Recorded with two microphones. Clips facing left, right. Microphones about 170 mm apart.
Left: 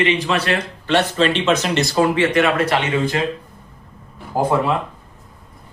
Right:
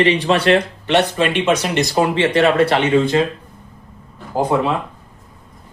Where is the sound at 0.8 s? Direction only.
20° right (ahead or behind).